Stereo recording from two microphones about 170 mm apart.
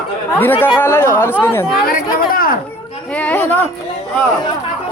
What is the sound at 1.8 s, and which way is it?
Speech, 55° left (ahead or behind).